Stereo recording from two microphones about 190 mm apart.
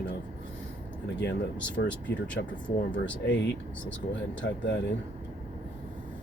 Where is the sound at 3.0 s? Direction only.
75° left (ahead or behind).